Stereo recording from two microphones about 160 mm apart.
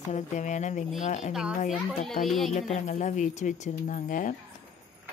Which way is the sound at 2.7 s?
50° left (ahead or behind).